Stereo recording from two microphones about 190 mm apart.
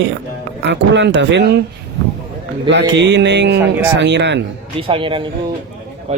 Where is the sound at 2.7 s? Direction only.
70° right (ahead or behind).